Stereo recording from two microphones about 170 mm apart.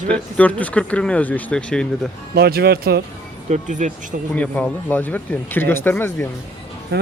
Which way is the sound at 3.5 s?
45° right (ahead or behind).